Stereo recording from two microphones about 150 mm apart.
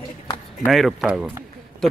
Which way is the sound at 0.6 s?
Centre (ahead or behind).